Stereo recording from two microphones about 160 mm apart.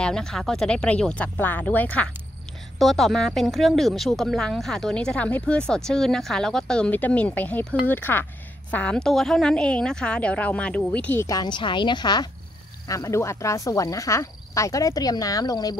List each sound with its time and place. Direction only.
0.0 s a woman's voice: 5° left (ahead or behind); by 15.7 s 25° left (ahead or behind)